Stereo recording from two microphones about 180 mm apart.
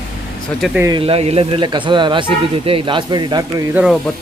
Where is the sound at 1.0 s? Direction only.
30° right (ahead or behind).